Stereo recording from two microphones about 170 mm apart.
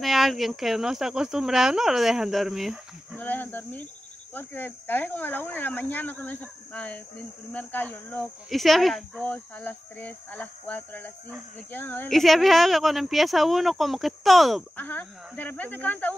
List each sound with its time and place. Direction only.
0.0 s speech: centre (ahead or behind)
3.2 s speech: 10° left (ahead or behind)
12.1 s speech: centre (ahead or behind)